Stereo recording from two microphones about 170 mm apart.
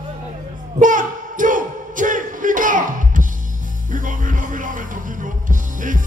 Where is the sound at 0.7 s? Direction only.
50° right (ahead or behind).